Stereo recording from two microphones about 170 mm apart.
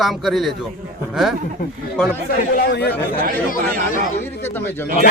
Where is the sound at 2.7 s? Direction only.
75° left (ahead or behind).